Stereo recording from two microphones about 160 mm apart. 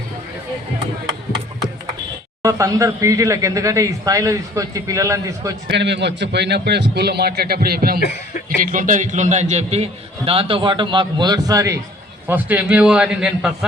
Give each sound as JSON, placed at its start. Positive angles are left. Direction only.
{"t": 2.4, "sound": "speech", "side_deg": -20}
{"t": 5.6, "sound": "a man's voice", "side_deg": -90}
{"t": 8.4, "sound": "a man's voice", "side_deg": -60}